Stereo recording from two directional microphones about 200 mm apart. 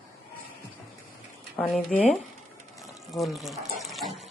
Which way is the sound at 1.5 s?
Centre (ahead or behind).